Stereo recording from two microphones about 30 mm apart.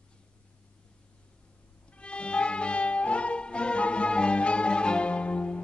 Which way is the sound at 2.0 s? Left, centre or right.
Left.